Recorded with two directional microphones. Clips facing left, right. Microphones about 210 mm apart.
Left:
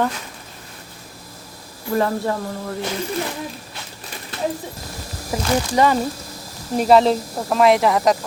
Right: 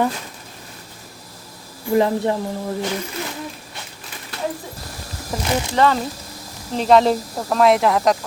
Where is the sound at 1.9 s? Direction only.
20° right (ahead or behind).